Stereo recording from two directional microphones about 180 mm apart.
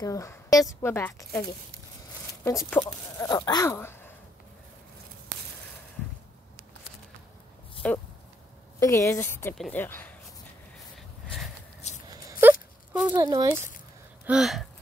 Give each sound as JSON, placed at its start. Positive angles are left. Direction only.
{"t": 0.0, "sound": "speech", "side_deg": 15}
{"t": 2.4, "sound": "speech", "side_deg": 15}
{"t": 7.8, "sound": "speech", "side_deg": 5}
{"t": 12.1, "sound": "dog", "side_deg": -15}
{"t": 13.1, "sound": "speech", "side_deg": -20}
{"t": 14.2, "sound": "a sound", "side_deg": -5}